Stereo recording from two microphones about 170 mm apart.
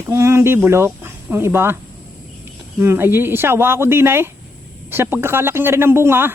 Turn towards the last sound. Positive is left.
turn(degrees=-15)  # may be behind; listen again after turning